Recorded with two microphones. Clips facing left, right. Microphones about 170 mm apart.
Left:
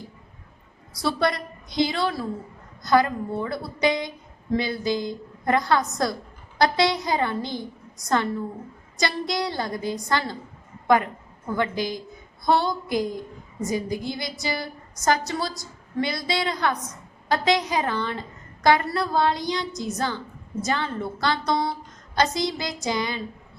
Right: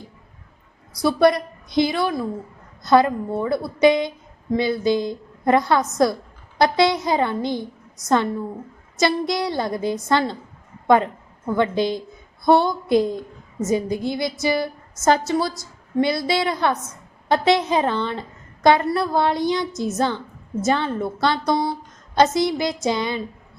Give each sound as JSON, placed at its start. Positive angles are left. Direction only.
{"t": 0.9, "sound": "a woman's voice", "side_deg": -20}
{"t": 2.8, "sound": "a woman's voice", "side_deg": -25}